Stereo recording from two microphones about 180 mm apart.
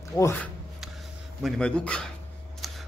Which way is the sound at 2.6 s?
Centre (ahead or behind).